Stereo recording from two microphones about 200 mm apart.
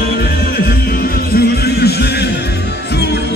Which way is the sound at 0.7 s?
45° left (ahead or behind).